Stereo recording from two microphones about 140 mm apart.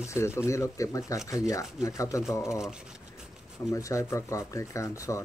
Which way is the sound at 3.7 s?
25° left (ahead or behind).